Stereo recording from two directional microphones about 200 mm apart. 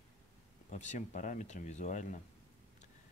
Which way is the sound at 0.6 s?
35° left (ahead or behind).